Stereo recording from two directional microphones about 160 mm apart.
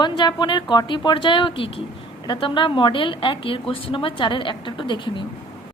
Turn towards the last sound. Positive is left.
turn(degrees=30)  # may be behind; listen again after turning